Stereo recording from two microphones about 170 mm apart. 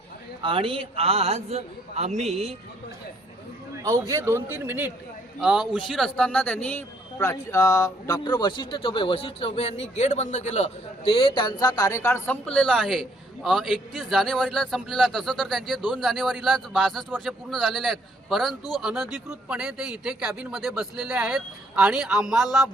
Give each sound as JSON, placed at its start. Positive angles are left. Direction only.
{"t": 0.4, "sound": "a man's voice", "side_deg": -30}
{"t": 4.1, "sound": "a man's voice", "side_deg": -15}
{"t": 6.1, "sound": "a man's voice", "side_deg": 10}